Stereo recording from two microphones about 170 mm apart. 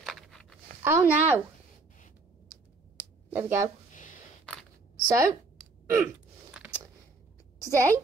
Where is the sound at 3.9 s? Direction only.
50° left (ahead or behind).